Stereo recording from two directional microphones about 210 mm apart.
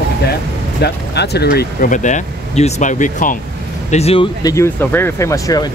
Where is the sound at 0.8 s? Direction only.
50° left (ahead or behind).